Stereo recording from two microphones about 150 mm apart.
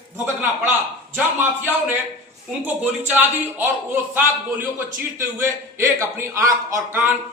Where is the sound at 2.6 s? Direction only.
10° right (ahead or behind).